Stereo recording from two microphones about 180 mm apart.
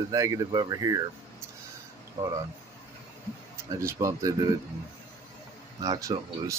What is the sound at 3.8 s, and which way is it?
Speech, 15° right (ahead or behind).